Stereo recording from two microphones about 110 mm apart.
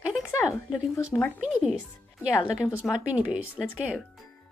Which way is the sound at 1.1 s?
15° left (ahead or behind).